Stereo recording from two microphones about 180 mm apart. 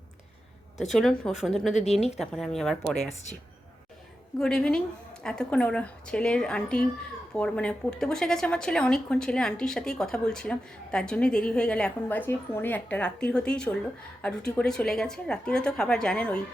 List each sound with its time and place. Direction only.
0.9 s a woman's voice: centre (ahead or behind)
1.9 s a woman's voice: 35° left (ahead or behind)
2.1 s a woman's voice: centre (ahead or behind)
4.4 s a woman's voice: 5° left (ahead or behind)